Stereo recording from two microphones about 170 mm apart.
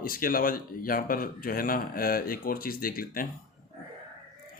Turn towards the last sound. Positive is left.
turn(degrees=60)  # may be behind; listen again after turning